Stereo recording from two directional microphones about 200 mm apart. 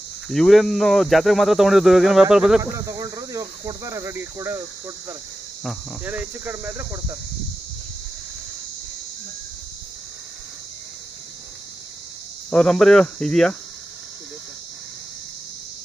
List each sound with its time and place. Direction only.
0.3 s speech: centre (ahead or behind)
2.6 s speech: 15° right (ahead or behind)
6.0 s speech: 10° right (ahead or behind)
12.4 s speech: 5° left (ahead or behind)